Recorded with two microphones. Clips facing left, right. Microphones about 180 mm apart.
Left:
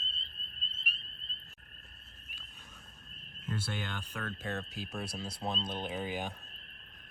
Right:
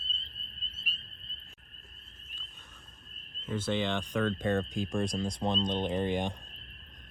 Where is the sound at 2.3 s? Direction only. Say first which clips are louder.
Right 1 dB; 10° left (ahead or behind).